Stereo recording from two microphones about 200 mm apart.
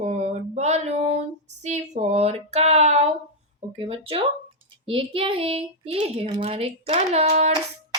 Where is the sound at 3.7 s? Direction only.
30° right (ahead or behind).